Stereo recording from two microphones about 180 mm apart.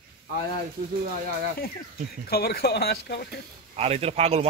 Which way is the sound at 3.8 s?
35° right (ahead or behind).